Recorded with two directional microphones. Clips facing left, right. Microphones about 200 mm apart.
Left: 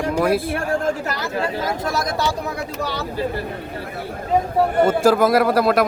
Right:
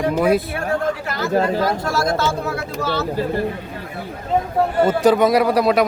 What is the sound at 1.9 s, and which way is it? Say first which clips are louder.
Speech: right 3 dB; 15° left (ahead or behind).